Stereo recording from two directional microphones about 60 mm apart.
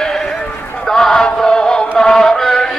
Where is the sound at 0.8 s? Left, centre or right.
Centre.